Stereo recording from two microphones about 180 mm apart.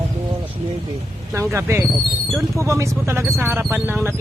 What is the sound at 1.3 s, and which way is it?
Speech, 15° right (ahead or behind).